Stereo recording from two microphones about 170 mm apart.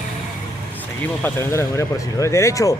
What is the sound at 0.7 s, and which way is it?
Speech, 15° left (ahead or behind).